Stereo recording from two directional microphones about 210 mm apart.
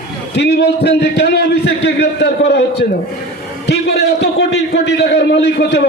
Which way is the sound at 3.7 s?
50° left (ahead or behind).